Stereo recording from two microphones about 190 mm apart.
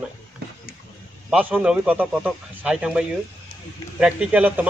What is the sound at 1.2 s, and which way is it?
A man's voice, 10° right (ahead or behind).